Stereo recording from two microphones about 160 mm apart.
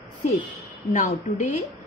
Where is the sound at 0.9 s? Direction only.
50° left (ahead or behind).